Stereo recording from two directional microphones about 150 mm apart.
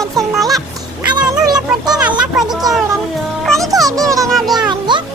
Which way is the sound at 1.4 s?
25° right (ahead or behind).